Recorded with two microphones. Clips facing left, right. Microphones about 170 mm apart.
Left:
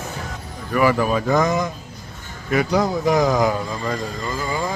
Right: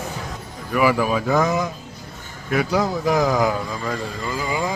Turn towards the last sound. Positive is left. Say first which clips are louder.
# even
turn(degrees=-10)  # may be behind; listen again after turning